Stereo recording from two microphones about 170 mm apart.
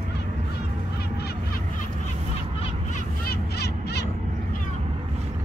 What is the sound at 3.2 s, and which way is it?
Crow, 70° left (ahead or behind).